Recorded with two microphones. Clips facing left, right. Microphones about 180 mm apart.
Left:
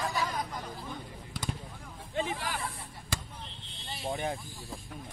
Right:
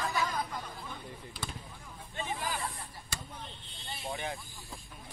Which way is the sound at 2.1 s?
85° left.